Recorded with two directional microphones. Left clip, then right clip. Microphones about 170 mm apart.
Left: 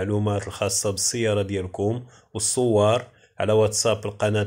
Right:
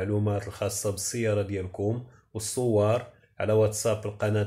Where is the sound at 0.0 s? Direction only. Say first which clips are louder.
Left 4 dB; 30° left (ahead or behind).